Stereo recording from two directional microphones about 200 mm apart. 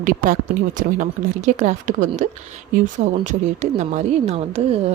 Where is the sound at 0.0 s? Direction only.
40° right (ahead or behind).